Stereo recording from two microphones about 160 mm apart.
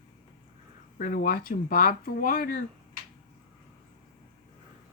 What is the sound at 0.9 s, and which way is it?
Speech, 55° left (ahead or behind).